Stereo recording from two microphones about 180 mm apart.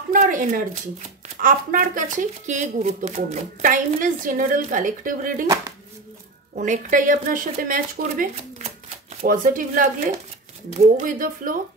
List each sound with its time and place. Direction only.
0.1 s a sound: 45° right (ahead or behind)
1.4 s speech: 50° right (ahead or behind)
6.5 s speech: 45° right (ahead or behind)